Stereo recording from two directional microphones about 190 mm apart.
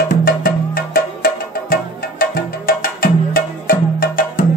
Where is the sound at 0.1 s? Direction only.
50° left (ahead or behind).